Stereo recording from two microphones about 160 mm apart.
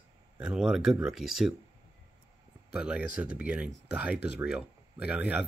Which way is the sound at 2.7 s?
5° right (ahead or behind).